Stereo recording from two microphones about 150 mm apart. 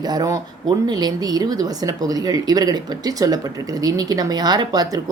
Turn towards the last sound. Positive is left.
turn(degrees=-25)  # may be behind; listen again after turning